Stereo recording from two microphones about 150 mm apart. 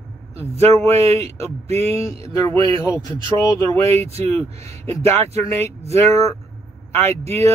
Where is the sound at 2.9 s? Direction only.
25° left (ahead or behind).